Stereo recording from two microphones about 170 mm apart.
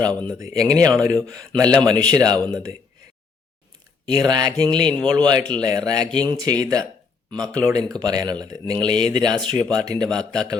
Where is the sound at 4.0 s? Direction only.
25° right (ahead or behind).